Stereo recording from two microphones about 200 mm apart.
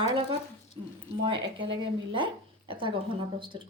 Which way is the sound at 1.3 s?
65° right (ahead or behind).